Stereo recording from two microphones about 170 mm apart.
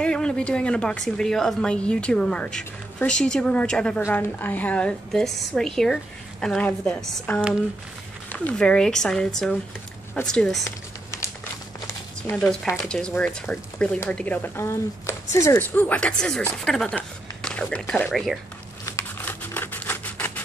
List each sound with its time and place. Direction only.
0.0 s a woman's voice: 5° left (ahead or behind)
10.6 s typing: 15° left (ahead or behind)
12.2 s a woman's voice: 5° left (ahead or behind)
18.9 s a sound: 15° left (ahead or behind)